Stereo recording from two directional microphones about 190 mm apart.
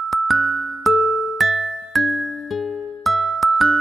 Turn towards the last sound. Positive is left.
turn(degrees=0)  # may be behind; listen again after turning